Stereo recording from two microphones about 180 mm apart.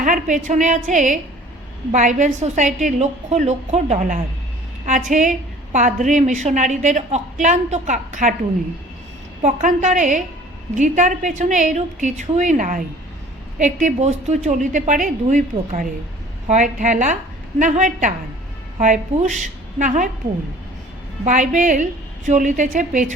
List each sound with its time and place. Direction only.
0.0 s a woman's voice: 45° right (ahead or behind)
9.4 s a woman's voice: 45° right (ahead or behind)
21.2 s a woman's voice: 45° right (ahead or behind)